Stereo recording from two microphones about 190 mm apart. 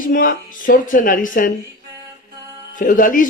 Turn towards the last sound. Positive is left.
turn(degrees=45)  # may be behind; listen again after turning